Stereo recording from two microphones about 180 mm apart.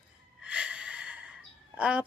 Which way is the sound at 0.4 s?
5° right (ahead or behind).